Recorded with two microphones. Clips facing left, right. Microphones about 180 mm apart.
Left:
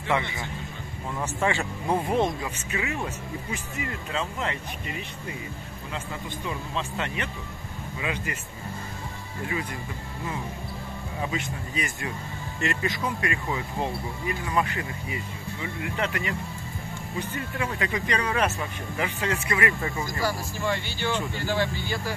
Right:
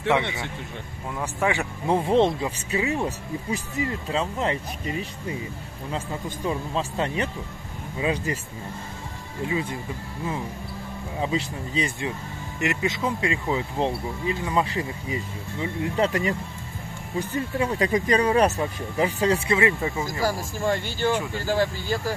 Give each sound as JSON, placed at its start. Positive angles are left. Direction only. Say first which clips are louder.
{"t": 1.2, "sound": "speech", "louder": "right 2 dB", "side_deg": -15}
{"t": 2.0, "sound": "speech", "louder": "right 5 dB", "side_deg": -25}
{"t": 9.5, "sound": "speech", "louder": "right 4 dB", "side_deg": -25}
{"t": 11.1, "sound": "speech", "louder": "right 5 dB", "side_deg": -25}
{"t": 17.4, "sound": "speech", "louder": "right 7 dB", "side_deg": -35}
{"t": 20.2, "sound": "speech", "louder": "right 4 dB", "side_deg": -45}